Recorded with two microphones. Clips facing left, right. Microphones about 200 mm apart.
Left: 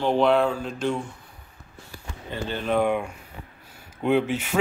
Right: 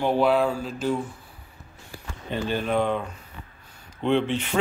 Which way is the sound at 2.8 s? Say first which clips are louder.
Left 2 dB; 10° left (ahead or behind).